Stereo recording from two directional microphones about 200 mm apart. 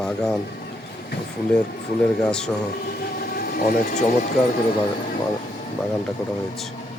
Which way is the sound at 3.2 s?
50° left (ahead or behind).